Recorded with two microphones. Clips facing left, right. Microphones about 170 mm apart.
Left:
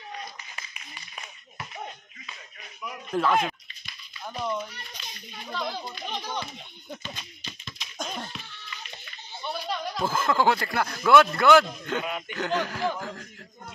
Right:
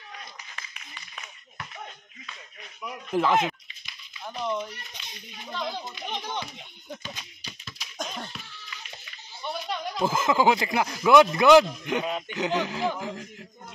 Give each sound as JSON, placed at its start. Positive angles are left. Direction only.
{"t": 3.1, "sound": "speech", "side_deg": -15}
{"t": 4.3, "sound": "a child's voice", "side_deg": 0}
{"t": 5.5, "sound": "a child's voice", "side_deg": -20}
{"t": 7.0, "sound": "hands", "side_deg": -10}
{"t": 9.5, "sound": "speech", "side_deg": -15}